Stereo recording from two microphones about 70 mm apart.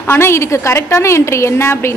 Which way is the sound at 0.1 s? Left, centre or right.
Left.